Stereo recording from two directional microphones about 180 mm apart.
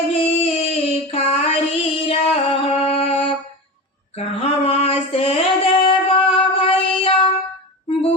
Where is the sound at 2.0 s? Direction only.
30° left (ahead or behind).